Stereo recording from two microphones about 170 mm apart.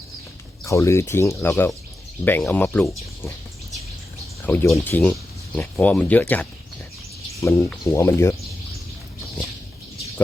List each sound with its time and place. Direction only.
0.6 s speech: 15° left (ahead or behind)
4.4 s speech: 10° left (ahead or behind)